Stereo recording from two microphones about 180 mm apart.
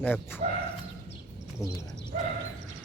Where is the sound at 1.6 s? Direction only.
20° left (ahead or behind).